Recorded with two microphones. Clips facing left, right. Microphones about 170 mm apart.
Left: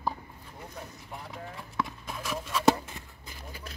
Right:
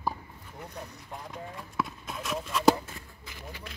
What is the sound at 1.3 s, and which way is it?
Speech, centre (ahead or behind).